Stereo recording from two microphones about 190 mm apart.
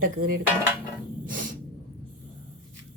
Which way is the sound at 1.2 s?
45° right (ahead or behind).